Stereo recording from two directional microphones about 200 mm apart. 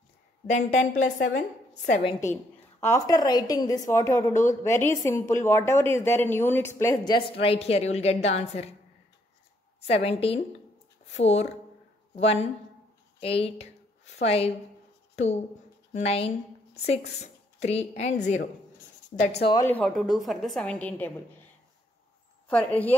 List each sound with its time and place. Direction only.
0.5 s a woman's voice: 35° left (ahead or behind)
2.0 s speech: 15° left (ahead or behind)
4.3 s a woman's voice: 40° left (ahead or behind)
5.0 s speech: 15° left (ahead or behind); by 8.6 s 30° left (ahead or behind)
9.8 s a woman's voice: 30° left (ahead or behind)
19.5 s a woman's voice: 10° left (ahead or behind)
22.5 s speech: 5° left (ahead or behind)